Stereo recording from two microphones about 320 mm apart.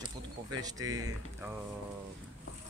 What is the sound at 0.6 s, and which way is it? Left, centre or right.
Speech, centre.